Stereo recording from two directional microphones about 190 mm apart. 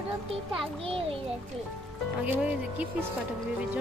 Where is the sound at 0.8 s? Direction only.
30° right (ahead or behind).